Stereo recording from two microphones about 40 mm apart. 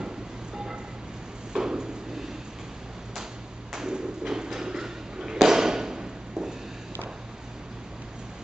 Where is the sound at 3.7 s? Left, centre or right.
Centre.